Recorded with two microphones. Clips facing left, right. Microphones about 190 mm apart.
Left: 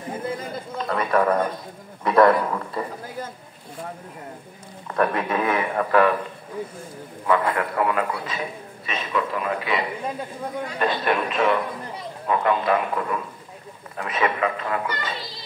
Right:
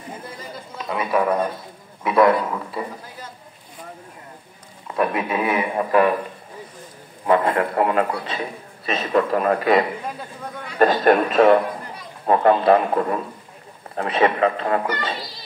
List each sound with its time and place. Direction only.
0.8 s a man's voice: 10° right (ahead or behind)
4.8 s a man's voice: 10° right (ahead or behind)
7.2 s a man's voice: 30° right (ahead or behind)